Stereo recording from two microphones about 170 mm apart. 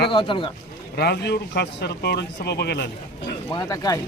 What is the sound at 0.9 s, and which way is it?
Speech, 70° left (ahead or behind).